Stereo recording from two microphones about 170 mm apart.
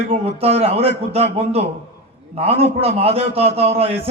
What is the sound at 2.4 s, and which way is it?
A man's voice, 35° right (ahead or behind).